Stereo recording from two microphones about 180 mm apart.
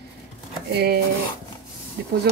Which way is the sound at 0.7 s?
65° right (ahead or behind).